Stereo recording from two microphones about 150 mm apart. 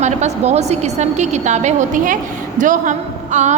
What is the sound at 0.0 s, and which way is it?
A woman's voice, 50° right (ahead or behind).